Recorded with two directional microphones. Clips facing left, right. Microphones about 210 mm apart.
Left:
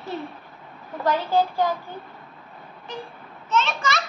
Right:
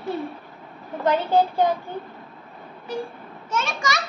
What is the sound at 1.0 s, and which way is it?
Speech, 20° right (ahead or behind).